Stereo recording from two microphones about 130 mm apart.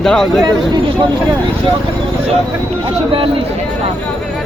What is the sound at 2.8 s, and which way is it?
Speech, 45° right (ahead or behind).